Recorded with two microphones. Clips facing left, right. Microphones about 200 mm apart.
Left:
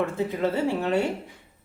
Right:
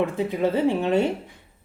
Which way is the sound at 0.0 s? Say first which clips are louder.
Right 2 dB; 15° right (ahead or behind).